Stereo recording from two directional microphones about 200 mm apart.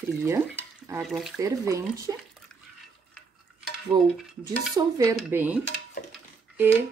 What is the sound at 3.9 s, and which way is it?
Cutlery, 20° right (ahead or behind).